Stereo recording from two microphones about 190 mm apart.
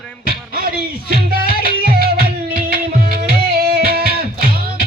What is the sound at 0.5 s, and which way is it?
Music, 50° right (ahead or behind).